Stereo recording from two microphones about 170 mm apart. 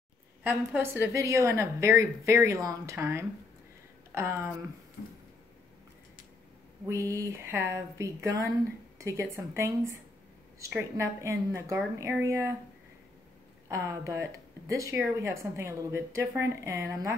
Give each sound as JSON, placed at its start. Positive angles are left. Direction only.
{"t": 0.4, "sound": "a woman's voice", "side_deg": -10}
{"t": 6.9, "sound": "a woman's voice", "side_deg": -15}
{"t": 11.0, "sound": "a woman's voice", "side_deg": -15}
{"t": 13.7, "sound": "a woman's voice", "side_deg": -15}